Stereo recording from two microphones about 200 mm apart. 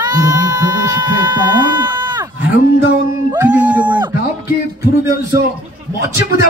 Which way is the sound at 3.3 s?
5° right (ahead or behind).